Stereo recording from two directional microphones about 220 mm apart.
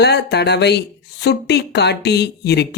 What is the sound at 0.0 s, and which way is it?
Speech, 50° left (ahead or behind).